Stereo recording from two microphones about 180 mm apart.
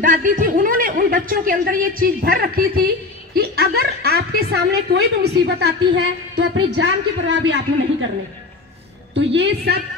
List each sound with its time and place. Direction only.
0.0 s a woman's voice: 45° right (ahead or behind); by 8.1 s 80° right
9.1 s a woman's voice: 80° right